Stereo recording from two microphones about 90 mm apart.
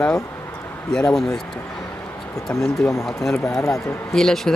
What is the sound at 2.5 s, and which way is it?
Speech, 5° left (ahead or behind).